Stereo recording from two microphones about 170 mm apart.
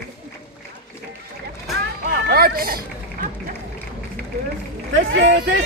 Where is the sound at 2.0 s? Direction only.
60° right (ahead or behind).